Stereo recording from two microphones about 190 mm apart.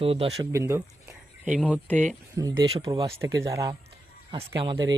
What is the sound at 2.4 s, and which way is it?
Speech, 20° right (ahead or behind).